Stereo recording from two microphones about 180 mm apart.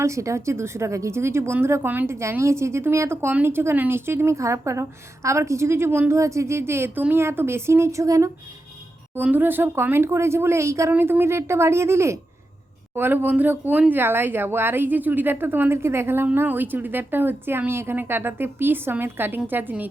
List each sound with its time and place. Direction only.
0.0 s speech: 15° right (ahead or behind)